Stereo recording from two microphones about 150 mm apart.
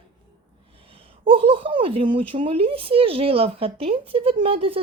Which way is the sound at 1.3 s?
35° right (ahead or behind).